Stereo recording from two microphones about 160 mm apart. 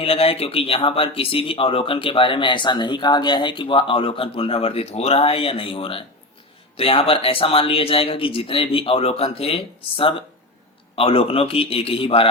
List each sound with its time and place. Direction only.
0.0 s speech: 35° left (ahead or behind)